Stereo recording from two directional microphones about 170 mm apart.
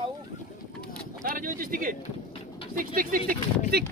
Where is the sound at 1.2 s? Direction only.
55° right (ahead or behind).